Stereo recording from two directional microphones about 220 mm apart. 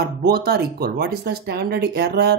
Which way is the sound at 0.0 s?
45° right (ahead or behind).